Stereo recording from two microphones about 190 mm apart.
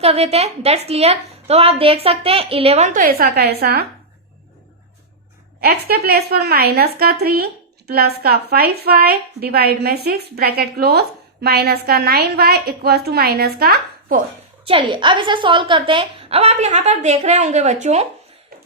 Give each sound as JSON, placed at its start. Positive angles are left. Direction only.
{"t": 0.0, "sound": "a woman's voice", "side_deg": -35}
{"t": 5.5, "sound": "a woman's voice", "side_deg": -55}
{"t": 14.6, "sound": "a woman's voice", "side_deg": -25}